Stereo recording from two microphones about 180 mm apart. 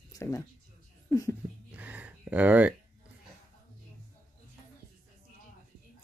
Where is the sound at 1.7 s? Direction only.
10° right (ahead or behind).